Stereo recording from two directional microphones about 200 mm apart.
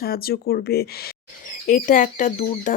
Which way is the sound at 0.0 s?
50° left (ahead or behind).